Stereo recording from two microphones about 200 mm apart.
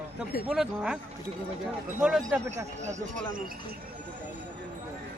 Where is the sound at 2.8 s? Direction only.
40° right (ahead or behind).